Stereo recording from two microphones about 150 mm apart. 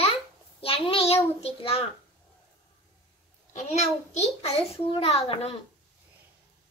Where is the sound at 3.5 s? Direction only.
50° left (ahead or behind).